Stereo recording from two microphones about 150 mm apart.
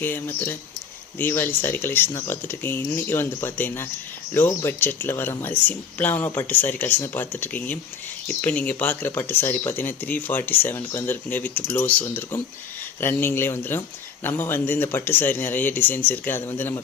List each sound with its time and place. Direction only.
0.0 s speech: 15° left (ahead or behind)